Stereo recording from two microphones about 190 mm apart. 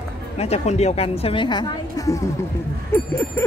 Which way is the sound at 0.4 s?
35° left (ahead or behind).